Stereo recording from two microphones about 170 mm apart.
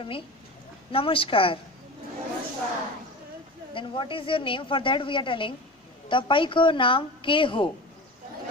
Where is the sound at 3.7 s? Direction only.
30° left (ahead or behind).